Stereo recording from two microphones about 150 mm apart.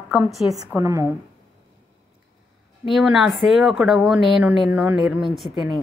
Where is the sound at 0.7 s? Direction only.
15° right (ahead or behind).